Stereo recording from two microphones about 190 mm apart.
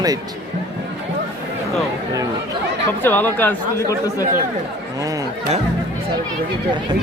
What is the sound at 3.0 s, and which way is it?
Speech, 10° left (ahead or behind).